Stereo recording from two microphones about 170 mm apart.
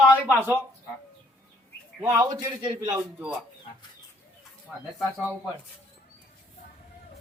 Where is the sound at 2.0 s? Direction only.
15° right (ahead or behind).